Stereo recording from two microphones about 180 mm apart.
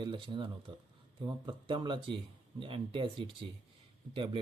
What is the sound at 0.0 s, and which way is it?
Speech, 25° right (ahead or behind).